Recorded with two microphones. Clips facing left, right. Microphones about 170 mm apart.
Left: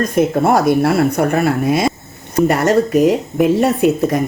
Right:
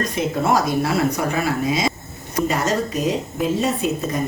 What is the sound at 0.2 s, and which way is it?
Speech, 55° left (ahead or behind).